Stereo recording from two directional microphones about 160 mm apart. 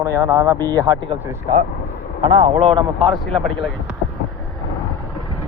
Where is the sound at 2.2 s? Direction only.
45° right (ahead or behind).